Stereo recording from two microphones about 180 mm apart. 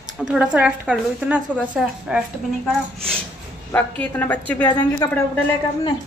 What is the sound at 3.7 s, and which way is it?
A woman's voice, 10° left (ahead or behind).